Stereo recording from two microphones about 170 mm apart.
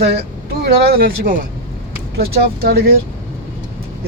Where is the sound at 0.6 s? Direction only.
60° right (ahead or behind).